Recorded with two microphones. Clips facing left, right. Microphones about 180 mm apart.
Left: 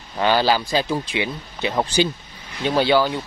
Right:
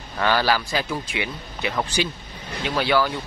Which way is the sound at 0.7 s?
35° left (ahead or behind).